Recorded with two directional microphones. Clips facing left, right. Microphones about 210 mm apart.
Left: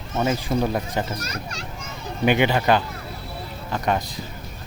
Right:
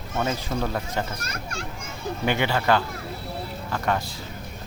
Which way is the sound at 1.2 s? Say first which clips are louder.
Left 1 dB; 50° right (ahead or behind).